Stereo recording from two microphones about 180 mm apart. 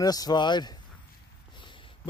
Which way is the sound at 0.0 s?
20° left (ahead or behind).